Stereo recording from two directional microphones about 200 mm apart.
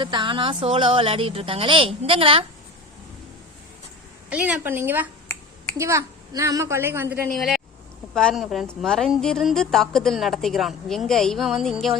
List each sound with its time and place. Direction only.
0.0 s a woman's voice: 25° right (ahead or behind)
4.3 s a woman's voice: 5° right (ahead or behind)
7.3 s a woman's voice: centre (ahead or behind)